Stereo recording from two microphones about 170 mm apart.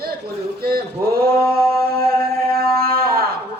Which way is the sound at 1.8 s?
60° right (ahead or behind).